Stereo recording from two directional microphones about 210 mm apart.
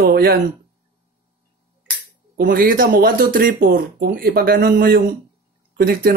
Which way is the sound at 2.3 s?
45° right (ahead or behind).